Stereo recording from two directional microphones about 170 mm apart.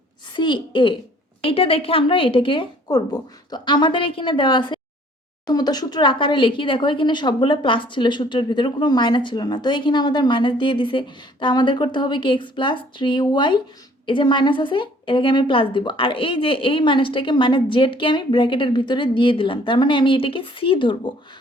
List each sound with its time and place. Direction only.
0.3 s speech: 30° left (ahead or behind)